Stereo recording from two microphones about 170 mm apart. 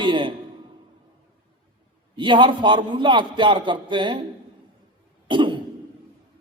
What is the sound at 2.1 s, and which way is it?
A man's voice, 30° right (ahead or behind).